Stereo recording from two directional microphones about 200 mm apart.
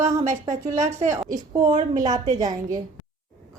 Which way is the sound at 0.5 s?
35° right (ahead or behind).